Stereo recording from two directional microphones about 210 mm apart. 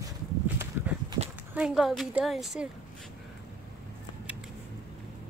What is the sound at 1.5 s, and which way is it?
A woman's voice, 5° right (ahead or behind).